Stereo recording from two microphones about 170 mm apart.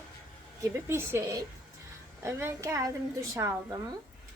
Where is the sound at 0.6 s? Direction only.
15° right (ahead or behind).